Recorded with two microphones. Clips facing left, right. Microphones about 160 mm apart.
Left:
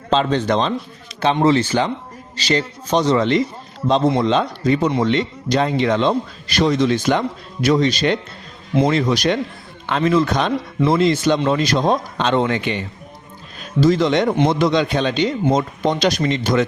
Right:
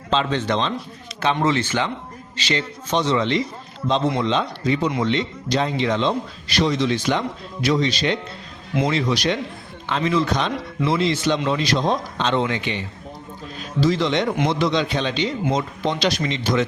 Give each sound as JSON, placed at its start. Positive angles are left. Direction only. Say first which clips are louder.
{"t": 0.1, "sound": "a man's voice", "louder": "left 4 dB", "side_deg": 40}